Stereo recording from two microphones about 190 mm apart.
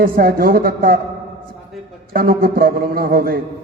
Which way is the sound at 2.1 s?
50° right (ahead or behind).